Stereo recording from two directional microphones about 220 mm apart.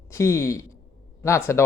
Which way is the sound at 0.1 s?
10° left (ahead or behind).